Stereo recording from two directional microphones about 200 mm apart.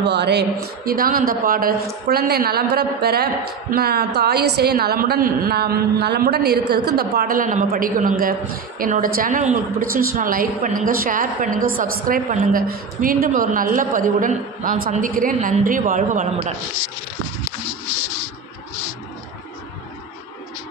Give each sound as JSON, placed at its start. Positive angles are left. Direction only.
{"t": 0.0, "sound": "a woman's voice", "side_deg": -55}